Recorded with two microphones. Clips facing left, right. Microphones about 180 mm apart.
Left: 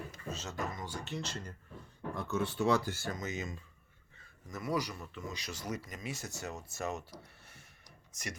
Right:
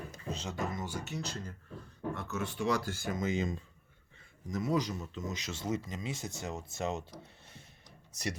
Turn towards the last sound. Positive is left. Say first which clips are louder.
# right 3 dB
turn(degrees=-20)  # may be behind; listen again after turning